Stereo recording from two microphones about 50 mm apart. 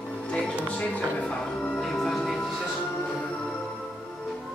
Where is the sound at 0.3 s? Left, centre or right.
Centre.